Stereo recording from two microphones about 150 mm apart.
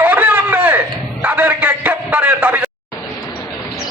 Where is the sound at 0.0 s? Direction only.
10° right (ahead or behind).